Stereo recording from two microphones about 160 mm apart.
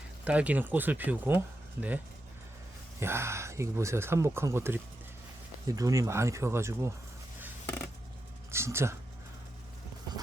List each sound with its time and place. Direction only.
0.3 s speech: 10° right (ahead or behind)
3.0 s speech: 15° right (ahead or behind)
8.4 s speech: 15° right (ahead or behind)